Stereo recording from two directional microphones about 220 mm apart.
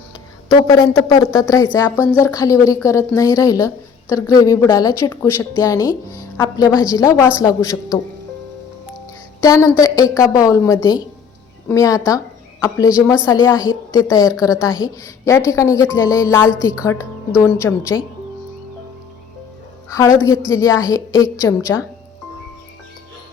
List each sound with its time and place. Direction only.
0.4 s a woman's voice: 15° left (ahead or behind)
9.4 s a woman's voice: 15° left (ahead or behind)
19.9 s a woman's voice: 15° left (ahead or behind)